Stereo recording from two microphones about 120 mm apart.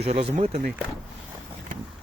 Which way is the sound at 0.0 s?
70° right (ahead or behind).